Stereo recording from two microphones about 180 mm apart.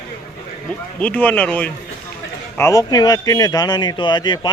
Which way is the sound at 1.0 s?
10° left (ahead or behind).